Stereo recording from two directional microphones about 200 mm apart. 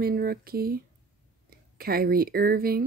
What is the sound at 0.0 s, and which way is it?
Speech, 50° right (ahead or behind).